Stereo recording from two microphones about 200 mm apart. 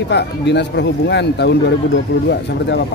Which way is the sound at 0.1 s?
60° left (ahead or behind).